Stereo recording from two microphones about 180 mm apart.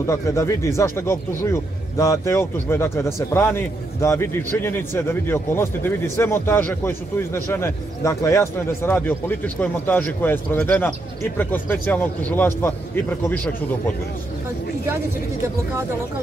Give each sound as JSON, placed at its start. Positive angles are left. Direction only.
{"t": 0.0, "sound": "a man's voice", "side_deg": 15}